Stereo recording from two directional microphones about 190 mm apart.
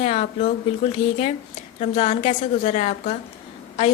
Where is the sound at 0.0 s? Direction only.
35° left (ahead or behind).